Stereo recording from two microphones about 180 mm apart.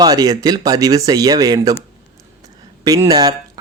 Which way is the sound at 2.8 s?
20° right (ahead or behind).